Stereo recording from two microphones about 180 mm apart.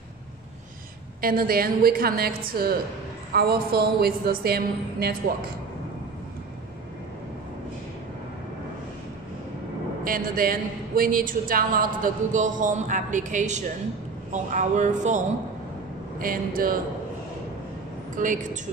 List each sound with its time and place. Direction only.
1.2 s a woman's voice: 55° right (ahead or behind)
10.0 s a man's voice: 55° right (ahead or behind)
16.2 s a man's voice: 55° right (ahead or behind)
18.1 s a man's voice: 45° right (ahead or behind)